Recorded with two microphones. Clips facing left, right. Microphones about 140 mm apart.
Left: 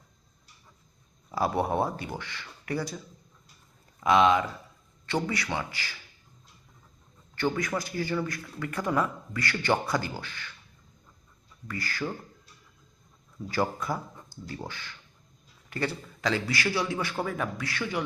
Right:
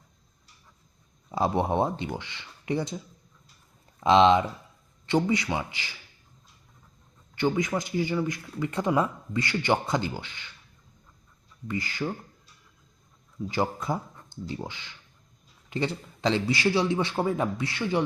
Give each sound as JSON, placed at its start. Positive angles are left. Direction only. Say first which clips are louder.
{"t": 1.3, "sound": "a man's voice", "louder": "right 2 dB", "side_deg": -20}
{"t": 4.0, "sound": "a man's voice", "louder": "right 3 dB", "side_deg": -25}
{"t": 7.3, "sound": "a man's voice", "louder": "right 3 dB", "side_deg": -20}
{"t": 11.7, "sound": "a man's voice", "louder": "right 3 dB", "side_deg": -20}
{"t": 13.5, "sound": "a man's voice", "louder": "right 1 dB", "side_deg": -20}